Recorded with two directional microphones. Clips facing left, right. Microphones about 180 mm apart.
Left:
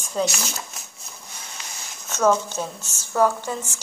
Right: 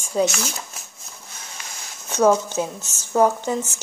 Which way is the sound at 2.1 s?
15° right (ahead or behind).